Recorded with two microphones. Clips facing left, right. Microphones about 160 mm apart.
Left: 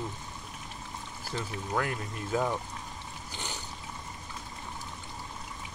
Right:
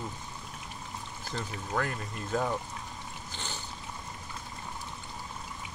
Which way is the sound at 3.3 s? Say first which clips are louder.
Left 2 dB; 15° left (ahead or behind).